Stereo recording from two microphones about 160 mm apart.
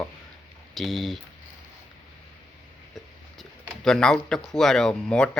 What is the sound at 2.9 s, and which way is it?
Speech, centre (ahead or behind).